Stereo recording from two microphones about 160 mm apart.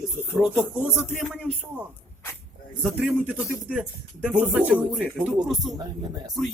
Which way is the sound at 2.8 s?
5° right (ahead or behind).